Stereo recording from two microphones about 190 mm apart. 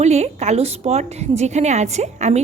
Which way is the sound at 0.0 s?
35° right (ahead or behind).